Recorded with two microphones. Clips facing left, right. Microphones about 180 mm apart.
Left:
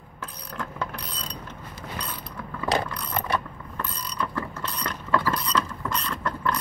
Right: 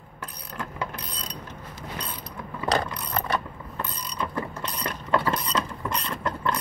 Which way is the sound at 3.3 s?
20° right (ahead or behind).